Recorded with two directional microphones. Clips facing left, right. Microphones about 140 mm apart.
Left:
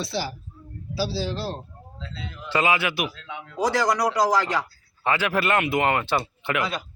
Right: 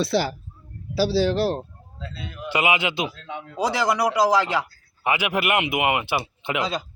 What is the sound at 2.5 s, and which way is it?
Speech, 15° right (ahead or behind).